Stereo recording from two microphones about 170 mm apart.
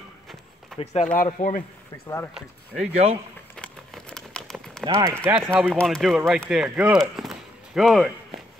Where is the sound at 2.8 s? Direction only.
40° right (ahead or behind).